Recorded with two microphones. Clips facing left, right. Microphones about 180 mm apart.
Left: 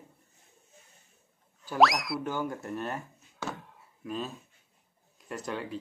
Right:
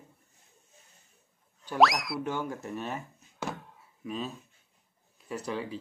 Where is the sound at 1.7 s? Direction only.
Centre (ahead or behind).